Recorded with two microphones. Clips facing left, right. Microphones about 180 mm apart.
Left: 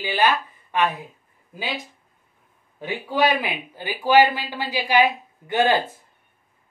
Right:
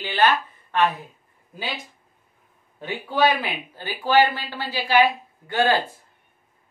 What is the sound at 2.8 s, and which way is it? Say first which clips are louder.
Speech: even; 15° left (ahead or behind).